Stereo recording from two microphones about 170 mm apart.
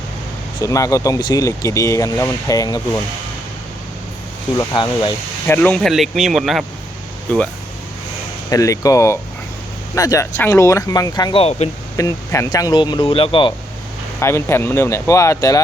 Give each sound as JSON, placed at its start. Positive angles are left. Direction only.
{"t": 0.6, "sound": "speech", "side_deg": 20}
{"t": 4.5, "sound": "speech", "side_deg": 25}
{"t": 5.5, "sound": "speech", "side_deg": 10}
{"t": 8.4, "sound": "speech", "side_deg": 20}
{"t": 11.9, "sound": "speech", "side_deg": 20}
{"t": 14.2, "sound": "speech", "side_deg": 15}